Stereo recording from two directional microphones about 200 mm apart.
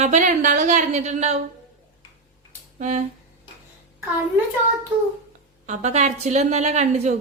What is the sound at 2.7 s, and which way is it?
Speech, 35° right (ahead or behind).